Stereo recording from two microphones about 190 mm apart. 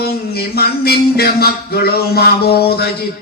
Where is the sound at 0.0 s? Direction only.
55° left (ahead or behind).